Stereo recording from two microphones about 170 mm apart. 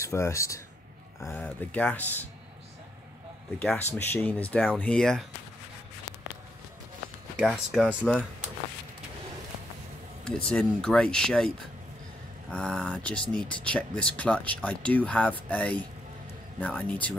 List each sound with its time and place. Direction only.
0.0 s speech: 15° left (ahead or behind)
3.5 s speech: 10° left (ahead or behind)
7.3 s speech: 5° right (ahead or behind)
10.2 s speech: 5° left (ahead or behind)